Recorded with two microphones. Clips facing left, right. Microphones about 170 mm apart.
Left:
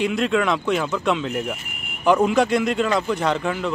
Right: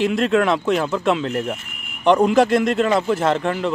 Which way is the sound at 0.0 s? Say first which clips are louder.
Right 3 dB; centre (ahead or behind).